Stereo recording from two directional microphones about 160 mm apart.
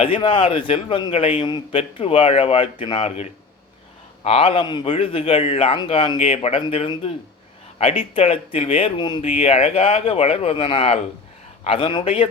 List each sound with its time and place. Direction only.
0.0 s a man's voice: 35° left (ahead or behind)
9.2 s a man's voice: 40° left (ahead or behind)